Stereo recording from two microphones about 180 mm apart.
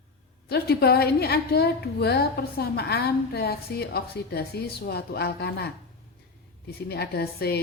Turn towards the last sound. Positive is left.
turn(degrees=60)  # may be behind; listen again after turning